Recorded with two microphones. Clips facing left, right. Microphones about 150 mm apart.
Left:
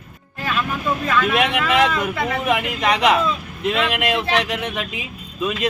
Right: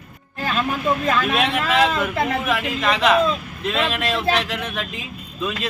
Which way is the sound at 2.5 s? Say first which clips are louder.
Left 2 dB; 15° left (ahead or behind).